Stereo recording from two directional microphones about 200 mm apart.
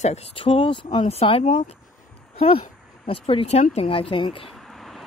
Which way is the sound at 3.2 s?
30° left (ahead or behind).